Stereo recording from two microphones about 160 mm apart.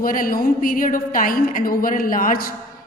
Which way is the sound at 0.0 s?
60° left (ahead or behind).